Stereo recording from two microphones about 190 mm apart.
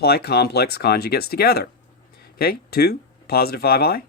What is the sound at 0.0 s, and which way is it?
Speech, 55° left (ahead or behind).